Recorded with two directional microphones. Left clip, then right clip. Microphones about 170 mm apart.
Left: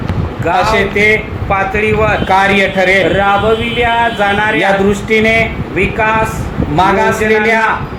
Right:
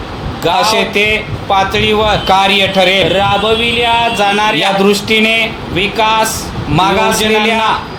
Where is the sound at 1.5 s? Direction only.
45° right (ahead or behind).